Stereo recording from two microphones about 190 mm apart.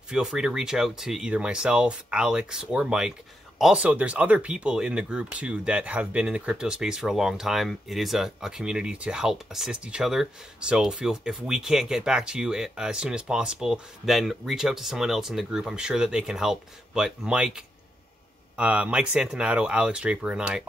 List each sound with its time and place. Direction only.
0.1 s speech: 5° right (ahead or behind)